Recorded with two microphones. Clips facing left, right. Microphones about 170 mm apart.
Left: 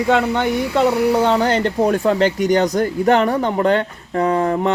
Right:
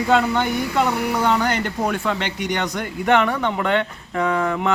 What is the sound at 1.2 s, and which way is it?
Speech, 30° left (ahead or behind).